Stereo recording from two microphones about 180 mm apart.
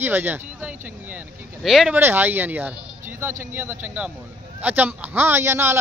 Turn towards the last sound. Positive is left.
turn(degrees=-15)  # may be behind; listen again after turning